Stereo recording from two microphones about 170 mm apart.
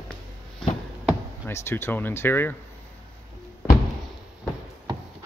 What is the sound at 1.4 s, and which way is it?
Speech, 15° left (ahead or behind).